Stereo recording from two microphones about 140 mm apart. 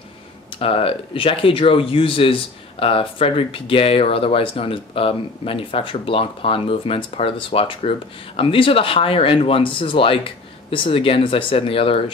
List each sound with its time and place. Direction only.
0.6 s speech: 40° left (ahead or behind)